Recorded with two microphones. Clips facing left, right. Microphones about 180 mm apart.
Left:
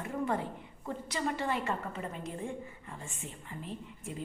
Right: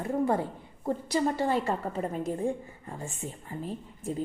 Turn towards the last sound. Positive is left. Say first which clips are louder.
# right 6 dB
turn(degrees=-40)  # may be behind; listen again after turning